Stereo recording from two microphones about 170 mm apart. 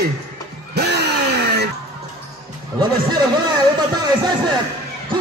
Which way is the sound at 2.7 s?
25° right (ahead or behind).